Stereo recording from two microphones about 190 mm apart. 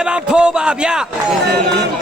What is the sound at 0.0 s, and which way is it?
Speech, 5° right (ahead or behind).